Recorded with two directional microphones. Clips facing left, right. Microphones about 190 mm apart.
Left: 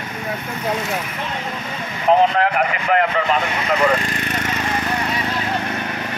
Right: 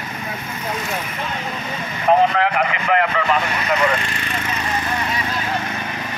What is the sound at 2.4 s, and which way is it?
Speech, 40° left (ahead or behind).